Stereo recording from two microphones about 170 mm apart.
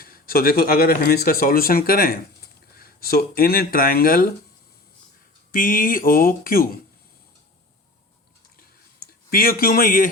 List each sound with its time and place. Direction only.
0.0 s speech: 60° left (ahead or behind)
5.5 s speech: 55° left (ahead or behind)
8.5 s a sound: 60° left (ahead or behind)